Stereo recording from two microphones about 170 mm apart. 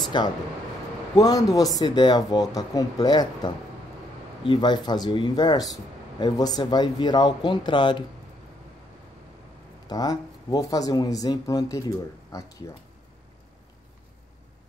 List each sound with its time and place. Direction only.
0.1 s speech: 30° left (ahead or behind)
9.8 s speech: 20° left (ahead or behind)